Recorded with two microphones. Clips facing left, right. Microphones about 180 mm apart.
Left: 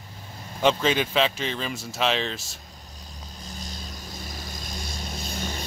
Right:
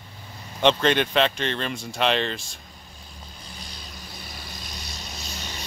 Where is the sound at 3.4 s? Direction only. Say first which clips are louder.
Left 5 dB; 45° left (ahead or behind).